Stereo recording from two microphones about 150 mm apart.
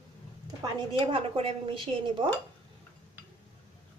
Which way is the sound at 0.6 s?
35° right (ahead or behind).